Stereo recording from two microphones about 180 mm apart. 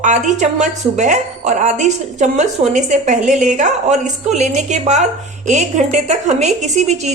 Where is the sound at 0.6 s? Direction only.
40° right (ahead or behind).